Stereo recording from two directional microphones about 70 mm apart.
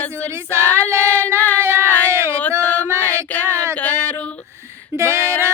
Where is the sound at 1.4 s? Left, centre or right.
Left.